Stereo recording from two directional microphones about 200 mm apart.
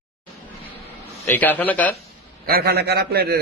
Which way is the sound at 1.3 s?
10° left (ahead or behind).